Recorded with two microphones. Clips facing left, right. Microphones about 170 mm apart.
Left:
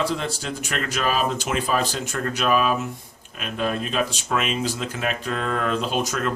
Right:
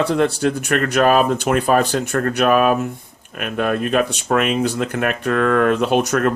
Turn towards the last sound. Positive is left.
turn(degrees=-60)  # may be behind; listen again after turning